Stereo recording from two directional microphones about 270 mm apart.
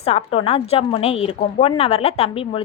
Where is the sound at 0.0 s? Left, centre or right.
Left.